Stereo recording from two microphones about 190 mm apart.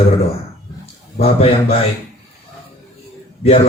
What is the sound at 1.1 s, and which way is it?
Speech, 30° left (ahead or behind).